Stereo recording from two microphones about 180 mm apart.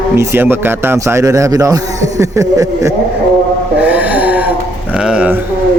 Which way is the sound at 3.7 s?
10° right (ahead or behind).